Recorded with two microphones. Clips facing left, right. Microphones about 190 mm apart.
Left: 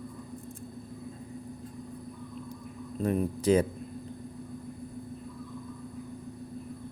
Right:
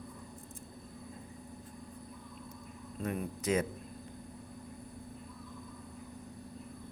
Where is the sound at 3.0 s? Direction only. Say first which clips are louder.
Left 9 dB; 35° left (ahead or behind).